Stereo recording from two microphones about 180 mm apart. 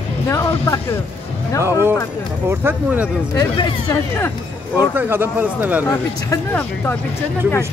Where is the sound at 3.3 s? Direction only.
20° left (ahead or behind).